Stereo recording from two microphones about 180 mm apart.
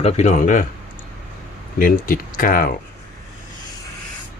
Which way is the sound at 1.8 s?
50° left (ahead or behind).